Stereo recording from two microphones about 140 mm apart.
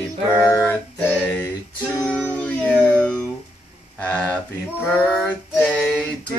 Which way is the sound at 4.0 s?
10° left (ahead or behind).